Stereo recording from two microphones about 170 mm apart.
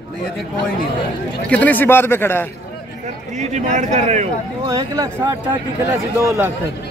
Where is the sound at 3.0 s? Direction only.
45° right (ahead or behind).